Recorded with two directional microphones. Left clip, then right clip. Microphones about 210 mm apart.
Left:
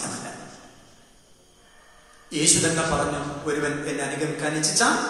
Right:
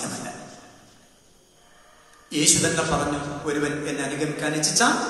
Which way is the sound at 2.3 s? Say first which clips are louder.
Right 1 dB; 50° right (ahead or behind).